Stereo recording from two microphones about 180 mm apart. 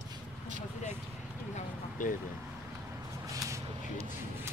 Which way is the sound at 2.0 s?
45° left (ahead or behind).